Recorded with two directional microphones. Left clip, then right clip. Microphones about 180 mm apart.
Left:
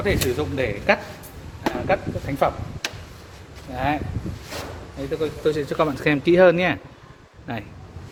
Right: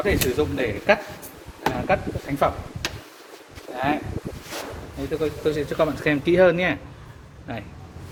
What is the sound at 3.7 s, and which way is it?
Speech, 55° left (ahead or behind).